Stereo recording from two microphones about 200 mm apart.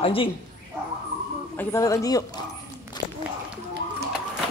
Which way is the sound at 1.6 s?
15° left (ahead or behind).